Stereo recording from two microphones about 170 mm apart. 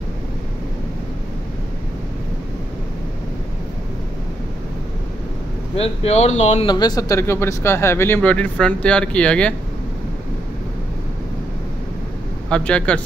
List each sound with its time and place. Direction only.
5.8 s speech: 40° left (ahead or behind)
6.6 s speech: 25° left (ahead or behind); by 9.5 s 5° left (ahead or behind)
12.4 s speech: 5° left (ahead or behind)